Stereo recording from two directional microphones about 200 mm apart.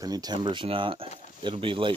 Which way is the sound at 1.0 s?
35° left (ahead or behind).